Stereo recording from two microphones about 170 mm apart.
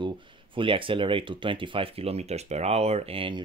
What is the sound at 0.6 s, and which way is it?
Speech, 30° right (ahead or behind).